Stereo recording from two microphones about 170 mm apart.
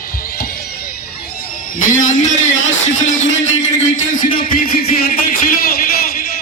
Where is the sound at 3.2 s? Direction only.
90° left.